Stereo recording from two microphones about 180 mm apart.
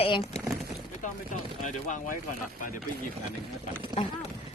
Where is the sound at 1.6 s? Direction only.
45° left (ahead or behind).